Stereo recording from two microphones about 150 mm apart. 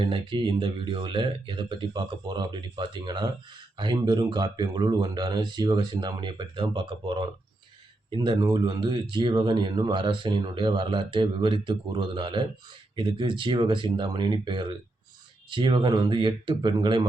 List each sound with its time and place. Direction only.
0.0 s speech: 35° right (ahead or behind)